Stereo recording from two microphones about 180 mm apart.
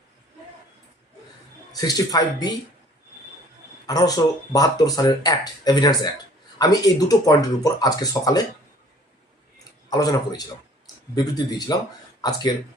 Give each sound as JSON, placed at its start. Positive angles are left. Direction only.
{"t": 1.7, "sound": "speech", "side_deg": 20}
{"t": 3.8, "sound": "speech", "side_deg": 20}
{"t": 9.9, "sound": "speech", "side_deg": 20}